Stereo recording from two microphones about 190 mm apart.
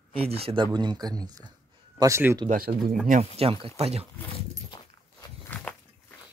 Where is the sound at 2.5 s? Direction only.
50° right (ahead or behind).